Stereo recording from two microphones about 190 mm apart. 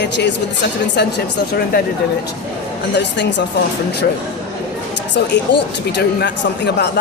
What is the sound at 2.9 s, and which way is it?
Speech, 65° left (ahead or behind).